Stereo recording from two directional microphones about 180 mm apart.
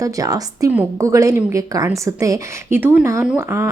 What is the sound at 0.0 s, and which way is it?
A woman's voice, 20° right (ahead or behind).